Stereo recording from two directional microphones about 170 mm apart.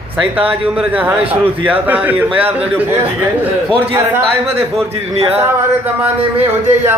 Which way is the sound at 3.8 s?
15° right (ahead or behind).